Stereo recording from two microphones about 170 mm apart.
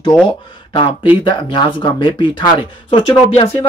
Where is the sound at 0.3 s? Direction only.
30° left (ahead or behind).